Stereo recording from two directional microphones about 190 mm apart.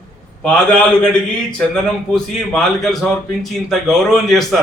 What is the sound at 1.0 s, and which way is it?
A man's voice, 5° left (ahead or behind).